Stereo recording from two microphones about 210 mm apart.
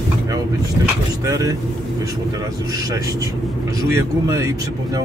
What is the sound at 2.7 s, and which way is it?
Speech, 20° right (ahead or behind).